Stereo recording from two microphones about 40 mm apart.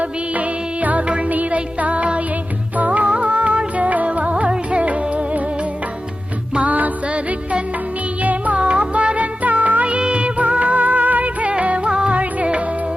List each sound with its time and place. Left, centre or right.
0.0 s music: right
6.5 s music: right
7.1 s music: right
8.2 s music: right
8.6 s music: right
12.1 s music: right